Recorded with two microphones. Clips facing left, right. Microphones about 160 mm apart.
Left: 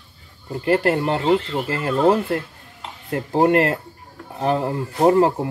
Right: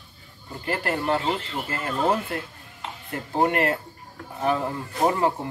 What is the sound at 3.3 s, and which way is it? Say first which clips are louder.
Speech: left 6 dB; 35° left (ahead or behind).